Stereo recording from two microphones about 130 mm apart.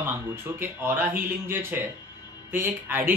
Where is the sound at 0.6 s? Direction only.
15° right (ahead or behind).